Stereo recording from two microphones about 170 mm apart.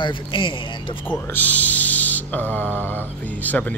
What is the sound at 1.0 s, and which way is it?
Speech, 10° left (ahead or behind).